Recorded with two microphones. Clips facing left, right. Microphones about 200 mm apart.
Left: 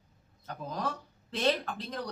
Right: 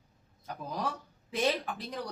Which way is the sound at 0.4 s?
10° right (ahead or behind).